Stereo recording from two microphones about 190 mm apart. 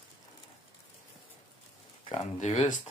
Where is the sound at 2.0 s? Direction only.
35° left (ahead or behind).